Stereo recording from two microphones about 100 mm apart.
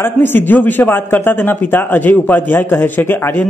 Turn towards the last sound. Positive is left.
turn(degrees=20)  # may be behind; listen again after turning